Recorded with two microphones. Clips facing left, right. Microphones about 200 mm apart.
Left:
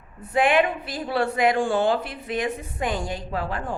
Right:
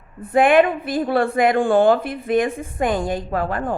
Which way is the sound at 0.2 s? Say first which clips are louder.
Right 6 dB; 50° right (ahead or behind).